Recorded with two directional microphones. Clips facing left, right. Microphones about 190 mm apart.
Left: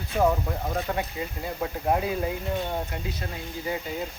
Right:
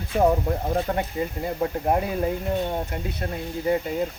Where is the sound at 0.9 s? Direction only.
45° right (ahead or behind).